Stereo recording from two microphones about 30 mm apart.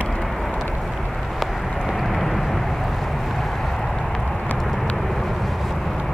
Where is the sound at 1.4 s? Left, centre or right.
Centre.